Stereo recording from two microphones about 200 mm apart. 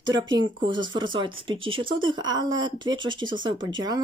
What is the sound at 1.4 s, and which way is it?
Speech, 25° right (ahead or behind).